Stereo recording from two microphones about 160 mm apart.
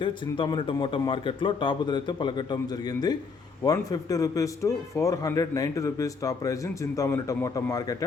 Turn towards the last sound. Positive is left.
turn(degrees=20)  # may be behind; listen again after turning